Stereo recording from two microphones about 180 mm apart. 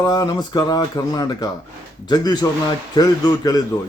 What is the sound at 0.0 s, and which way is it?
A man's voice, 20° left (ahead or behind).